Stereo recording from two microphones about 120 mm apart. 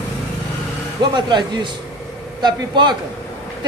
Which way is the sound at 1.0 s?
40° right (ahead or behind).